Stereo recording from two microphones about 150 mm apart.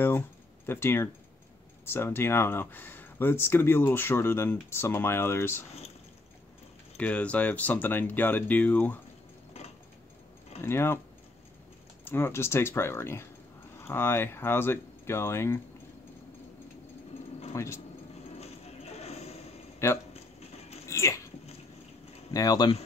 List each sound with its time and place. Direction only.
0.7 s speech: 15° left (ahead or behind)
7.0 s speech: 10° left (ahead or behind)
10.6 s speech: 15° left (ahead or behind)
12.0 s speech: 15° left (ahead or behind)
17.5 s speech: 20° left (ahead or behind)
18.9 s a sound: 45° left (ahead or behind)
19.8 s speech: 15° left (ahead or behind)
20.3 s a sound: 45° left (ahead or behind)
20.8 s a sound: 20° left (ahead or behind)
22.3 s speech: 25° left (ahead or behind)